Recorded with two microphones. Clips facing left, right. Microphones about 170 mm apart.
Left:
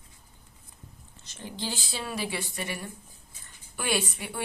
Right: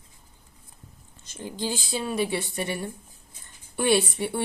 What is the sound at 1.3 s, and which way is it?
Speech, 15° right (ahead or behind).